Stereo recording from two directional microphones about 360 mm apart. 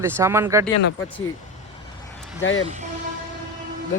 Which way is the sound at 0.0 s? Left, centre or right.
Centre.